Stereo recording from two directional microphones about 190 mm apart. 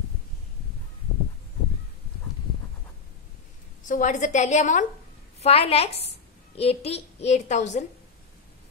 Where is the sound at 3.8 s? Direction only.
40° left (ahead or behind).